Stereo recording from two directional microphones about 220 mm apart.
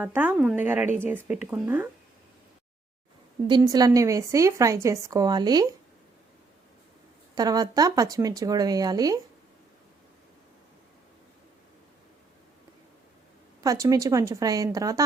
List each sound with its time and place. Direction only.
0.0 s a woman's voice: 10° right (ahead or behind)
3.4 s a woman's voice: 20° right (ahead or behind)
7.3 s a woman's voice: 15° right (ahead or behind)
13.6 s a woman's voice: 15° right (ahead or behind)